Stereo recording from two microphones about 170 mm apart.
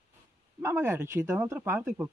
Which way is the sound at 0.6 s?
15° right (ahead or behind).